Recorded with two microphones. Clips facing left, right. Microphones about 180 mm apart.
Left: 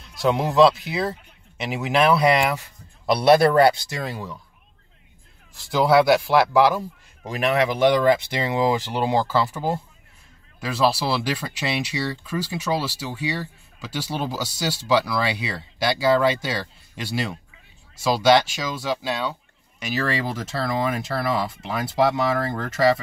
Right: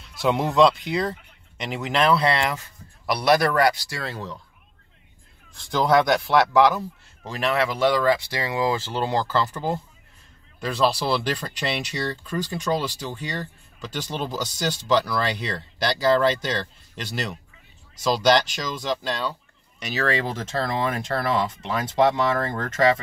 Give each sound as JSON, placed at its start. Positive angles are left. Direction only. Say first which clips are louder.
{"t": 0.1, "sound": "speech", "louder": "left 1 dB", "side_deg": 0}
{"t": 3.1, "sound": "speech", "louder": "left 4 dB", "side_deg": 25}
{"t": 5.6, "sound": "speech", "louder": "left 2 dB", "side_deg": 5}